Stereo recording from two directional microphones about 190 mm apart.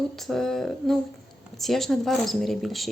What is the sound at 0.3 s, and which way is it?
Speech, centre (ahead or behind).